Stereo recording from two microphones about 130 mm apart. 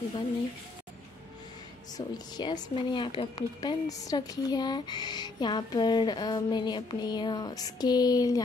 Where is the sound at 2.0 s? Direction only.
30° left (ahead or behind).